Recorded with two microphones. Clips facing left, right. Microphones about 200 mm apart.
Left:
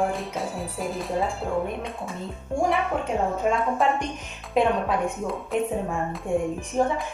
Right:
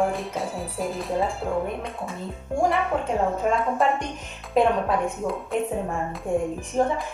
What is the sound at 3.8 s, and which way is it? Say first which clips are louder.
Speech: right 1 dB; centre (ahead or behind).